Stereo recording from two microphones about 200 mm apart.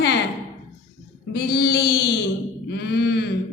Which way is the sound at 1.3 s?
55° left (ahead or behind).